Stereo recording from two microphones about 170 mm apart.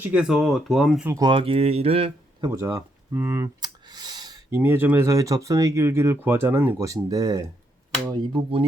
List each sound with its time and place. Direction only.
0.0 s speech: 5° right (ahead or behind)
1.0 s speech: 20° right (ahead or behind)
1.3 s speech: 30° right (ahead or behind)
2.5 s a sound: 20° right (ahead or behind)
4.5 s speech: 10° right (ahead or behind); by 8.6 s 30° right (ahead or behind)